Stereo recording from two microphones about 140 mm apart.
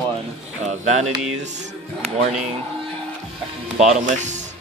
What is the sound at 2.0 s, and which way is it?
Speech, 5° right (ahead or behind).